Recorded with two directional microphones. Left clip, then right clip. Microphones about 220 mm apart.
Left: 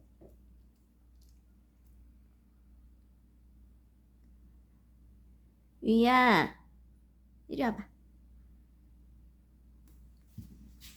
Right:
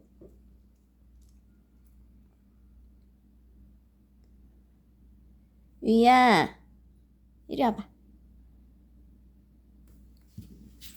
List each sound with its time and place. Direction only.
5.8 s a woman's voice: 15° right (ahead or behind)